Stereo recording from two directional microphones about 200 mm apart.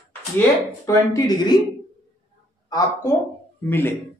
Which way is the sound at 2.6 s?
15° left (ahead or behind).